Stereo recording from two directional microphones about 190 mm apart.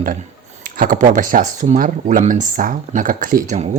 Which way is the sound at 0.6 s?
45° right (ahead or behind).